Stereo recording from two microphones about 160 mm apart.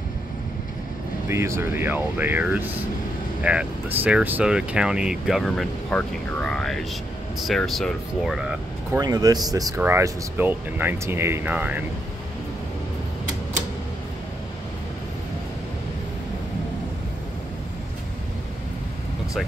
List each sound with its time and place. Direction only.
1.3 s speech: 15° right (ahead or behind)
8.9 s speech: 25° right (ahead or behind)